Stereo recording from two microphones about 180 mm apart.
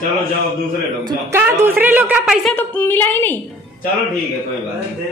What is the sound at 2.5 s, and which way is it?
Speech, 10° left (ahead or behind).